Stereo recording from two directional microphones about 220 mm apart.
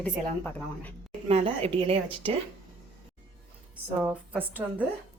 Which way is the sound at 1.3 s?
25° right (ahead or behind).